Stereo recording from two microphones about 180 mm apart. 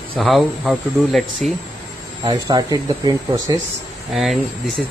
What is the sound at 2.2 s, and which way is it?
Speech, 25° right (ahead or behind).